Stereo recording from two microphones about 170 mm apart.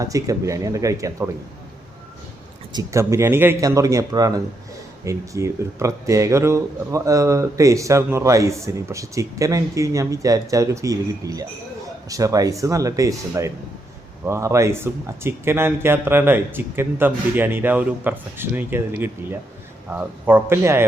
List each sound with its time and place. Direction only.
0.0 s speech: 20° right (ahead or behind)
2.7 s speech: 15° right (ahead or behind)